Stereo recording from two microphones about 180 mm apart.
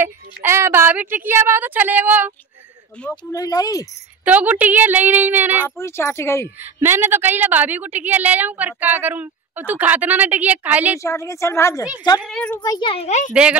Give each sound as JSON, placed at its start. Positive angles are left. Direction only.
{"t": 0.0, "sound": "a woman's voice", "side_deg": -15}
{"t": 3.3, "sound": "speech", "side_deg": 20}
{"t": 4.2, "sound": "a woman's voice", "side_deg": -10}
{"t": 5.8, "sound": "a woman's voice", "side_deg": 15}
{"t": 6.6, "sound": "a woman's voice", "side_deg": -10}
{"t": 11.0, "sound": "a woman's voice", "side_deg": 15}
{"t": 12.2, "sound": "a woman's voice", "side_deg": 5}
{"t": 12.8, "sound": "a child's voice", "side_deg": 35}
{"t": 13.3, "sound": "a woman's voice", "side_deg": -5}